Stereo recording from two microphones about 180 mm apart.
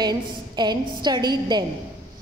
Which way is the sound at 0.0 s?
25° right (ahead or behind).